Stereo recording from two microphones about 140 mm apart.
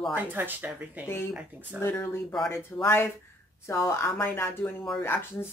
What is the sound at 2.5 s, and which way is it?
Speech, 15° left (ahead or behind).